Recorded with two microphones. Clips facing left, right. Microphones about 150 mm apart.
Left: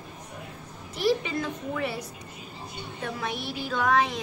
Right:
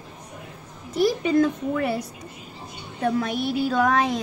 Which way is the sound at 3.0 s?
50° right (ahead or behind).